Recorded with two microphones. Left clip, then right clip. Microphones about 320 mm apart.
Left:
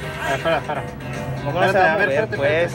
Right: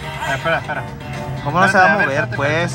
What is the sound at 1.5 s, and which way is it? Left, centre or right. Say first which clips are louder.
A man's voice: right 4 dB; centre.